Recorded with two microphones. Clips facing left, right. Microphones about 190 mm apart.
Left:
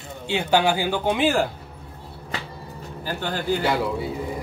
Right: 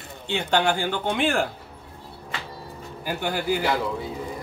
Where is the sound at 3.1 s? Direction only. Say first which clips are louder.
Even; 10° right (ahead or behind).